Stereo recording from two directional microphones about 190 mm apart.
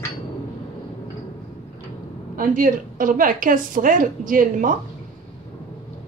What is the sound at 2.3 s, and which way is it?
A woman's voice, 45° right (ahead or behind).